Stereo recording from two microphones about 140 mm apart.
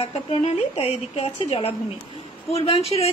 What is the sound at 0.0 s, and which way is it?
A woman's voice, 45° left (ahead or behind).